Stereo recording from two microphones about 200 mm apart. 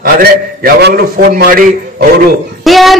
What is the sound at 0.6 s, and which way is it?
A man's voice, 50° right (ahead or behind).